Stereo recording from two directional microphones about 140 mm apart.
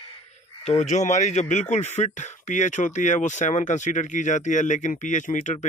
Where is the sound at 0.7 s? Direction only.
60° left (ahead or behind).